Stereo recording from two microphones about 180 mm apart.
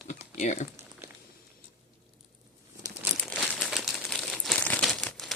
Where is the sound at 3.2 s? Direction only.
Centre (ahead or behind).